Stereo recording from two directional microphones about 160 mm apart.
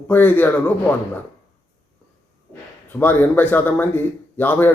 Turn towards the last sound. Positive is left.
turn(degrees=10)  # may be behind; listen again after turning